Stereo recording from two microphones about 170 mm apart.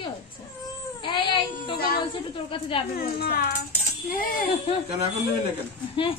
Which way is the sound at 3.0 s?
65° left (ahead or behind).